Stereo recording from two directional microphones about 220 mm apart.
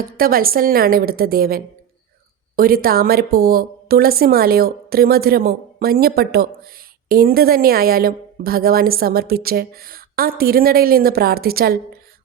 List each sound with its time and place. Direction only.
0.0 s a woman's voice: 40° right (ahead or behind)